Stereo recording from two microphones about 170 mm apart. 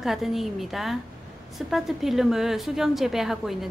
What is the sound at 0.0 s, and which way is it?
A woman's voice, centre (ahead or behind).